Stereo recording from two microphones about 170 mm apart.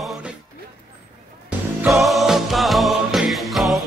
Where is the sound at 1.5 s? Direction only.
Centre (ahead or behind).